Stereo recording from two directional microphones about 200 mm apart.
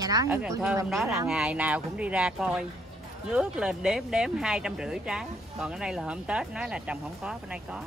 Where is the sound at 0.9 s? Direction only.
Centre (ahead or behind).